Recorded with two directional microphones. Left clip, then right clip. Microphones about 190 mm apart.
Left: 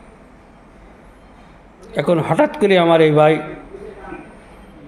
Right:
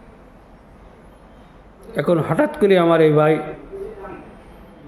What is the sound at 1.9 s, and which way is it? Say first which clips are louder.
Speech: left 3 dB; 15° right (ahead or behind).